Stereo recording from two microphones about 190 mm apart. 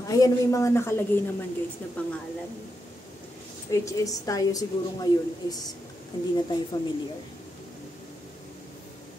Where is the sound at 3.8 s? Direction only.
20° left (ahead or behind).